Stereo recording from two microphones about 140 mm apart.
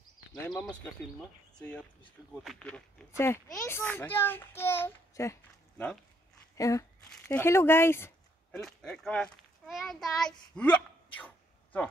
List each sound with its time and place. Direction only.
0.3 s a child's voice: 5° left (ahead or behind)
3.1 s a child's voice: 20° left (ahead or behind)
8.5 s a child's voice: 5° left (ahead or behind)
11.1 s a sound: 10° left (ahead or behind)